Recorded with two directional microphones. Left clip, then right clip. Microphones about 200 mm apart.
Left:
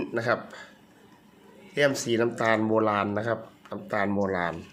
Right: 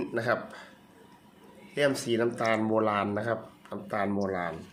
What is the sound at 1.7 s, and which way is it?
Speech, 15° left (ahead or behind).